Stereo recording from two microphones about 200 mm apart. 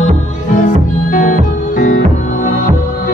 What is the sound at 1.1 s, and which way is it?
Music, 40° left (ahead or behind).